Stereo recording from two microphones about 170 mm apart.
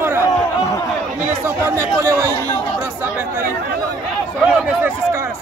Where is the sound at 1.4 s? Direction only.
15° right (ahead or behind).